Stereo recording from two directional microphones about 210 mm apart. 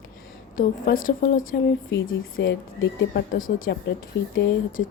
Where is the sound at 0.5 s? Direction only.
40° left (ahead or behind).